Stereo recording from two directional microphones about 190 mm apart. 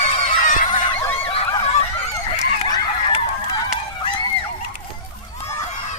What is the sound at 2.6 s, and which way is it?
Honk, 20° left (ahead or behind).